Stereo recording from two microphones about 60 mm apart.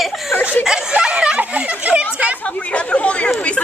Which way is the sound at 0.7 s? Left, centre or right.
Centre.